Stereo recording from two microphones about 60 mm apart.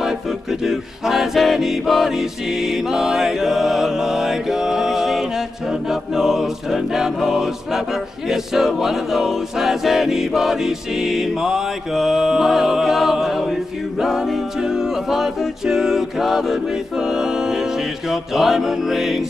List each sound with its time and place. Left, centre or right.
0.0 s a capella: centre
5.7 s mantra: centre
8.3 s a capella: centre
17.0 s music: centre
18.1 s a capella: centre